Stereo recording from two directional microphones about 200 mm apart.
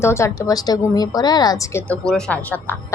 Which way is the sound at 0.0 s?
15° left (ahead or behind).